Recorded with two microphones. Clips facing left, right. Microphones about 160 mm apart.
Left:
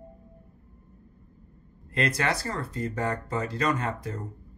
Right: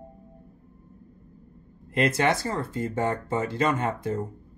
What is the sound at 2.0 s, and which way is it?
Speech, 25° right (ahead or behind).